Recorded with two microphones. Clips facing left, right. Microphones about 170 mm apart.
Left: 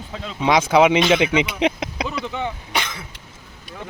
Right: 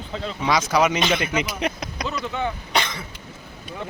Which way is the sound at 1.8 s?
15° left (ahead or behind).